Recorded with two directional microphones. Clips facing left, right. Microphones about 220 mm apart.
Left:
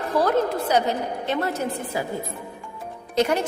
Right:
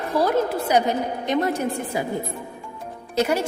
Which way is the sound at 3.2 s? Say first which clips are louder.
Even; 5° right (ahead or behind).